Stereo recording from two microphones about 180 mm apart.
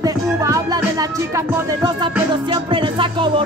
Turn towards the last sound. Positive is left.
turn(degrees=-30)  # may be behind; listen again after turning